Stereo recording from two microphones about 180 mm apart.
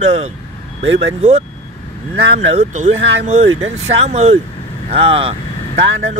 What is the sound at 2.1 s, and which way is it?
Speech, 35° right (ahead or behind).